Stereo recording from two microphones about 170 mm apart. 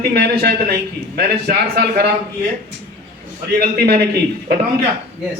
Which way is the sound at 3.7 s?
70° right (ahead or behind).